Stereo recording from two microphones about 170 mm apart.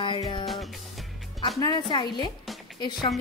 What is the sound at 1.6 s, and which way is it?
Speech, 25° left (ahead or behind).